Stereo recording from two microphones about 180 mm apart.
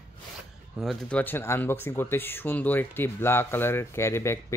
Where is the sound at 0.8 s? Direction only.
5° left (ahead or behind).